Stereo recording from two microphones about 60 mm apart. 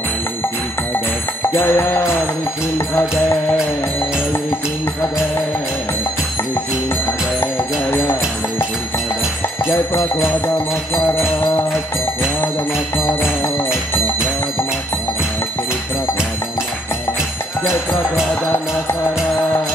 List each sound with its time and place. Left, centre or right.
1.4 s music: left
7.9 s music: left
12.9 s music: left